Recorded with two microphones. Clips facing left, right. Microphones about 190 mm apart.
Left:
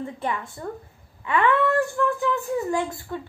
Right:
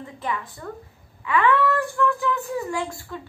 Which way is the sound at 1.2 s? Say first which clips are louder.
Right 1 dB; 30° left (ahead or behind).